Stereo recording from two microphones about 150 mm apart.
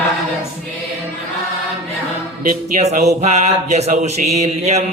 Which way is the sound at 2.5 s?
50° right (ahead or behind).